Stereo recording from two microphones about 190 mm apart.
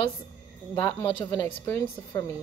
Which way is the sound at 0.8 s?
15° left (ahead or behind).